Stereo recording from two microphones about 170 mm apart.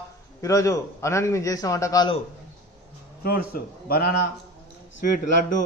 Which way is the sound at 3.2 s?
60° left (ahead or behind).